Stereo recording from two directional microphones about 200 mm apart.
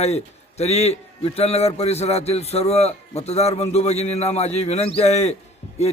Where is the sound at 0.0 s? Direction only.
30° left (ahead or behind).